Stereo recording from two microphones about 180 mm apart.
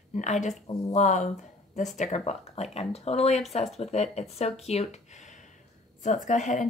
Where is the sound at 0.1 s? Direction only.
40° left (ahead or behind).